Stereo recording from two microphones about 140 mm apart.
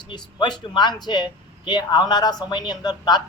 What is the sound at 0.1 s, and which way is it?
Speech, 30° left (ahead or behind).